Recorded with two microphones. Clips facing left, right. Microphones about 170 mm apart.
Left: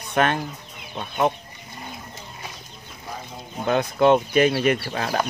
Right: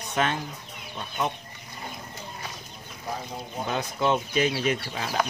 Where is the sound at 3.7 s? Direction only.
60° left (ahead or behind).